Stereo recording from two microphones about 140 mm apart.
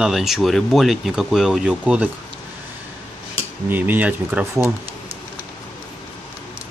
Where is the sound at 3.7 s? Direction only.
15° right (ahead or behind).